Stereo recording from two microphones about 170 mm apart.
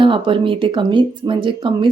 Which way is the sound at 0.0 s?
30° right (ahead or behind).